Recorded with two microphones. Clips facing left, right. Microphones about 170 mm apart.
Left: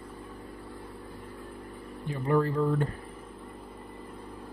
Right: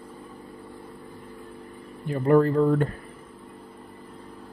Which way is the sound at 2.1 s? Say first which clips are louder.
Right 7 dB; 60° right (ahead or behind).